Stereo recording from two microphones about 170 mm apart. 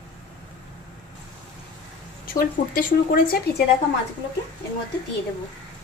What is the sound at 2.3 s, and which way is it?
Speech, 60° left (ahead or behind).